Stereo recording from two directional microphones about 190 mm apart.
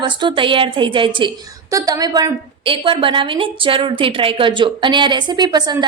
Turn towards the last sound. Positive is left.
turn(degrees=-20)  # may be behind; listen again after turning